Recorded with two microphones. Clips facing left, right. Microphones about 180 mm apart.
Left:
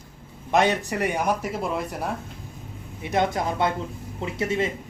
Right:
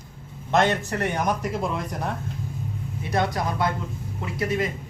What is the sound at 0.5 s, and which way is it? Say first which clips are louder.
Speech: even; 10° left (ahead or behind).